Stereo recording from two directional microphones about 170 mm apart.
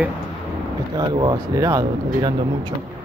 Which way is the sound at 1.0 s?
25° right (ahead or behind).